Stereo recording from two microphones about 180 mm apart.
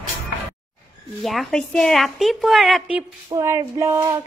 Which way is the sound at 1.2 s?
Centre (ahead or behind).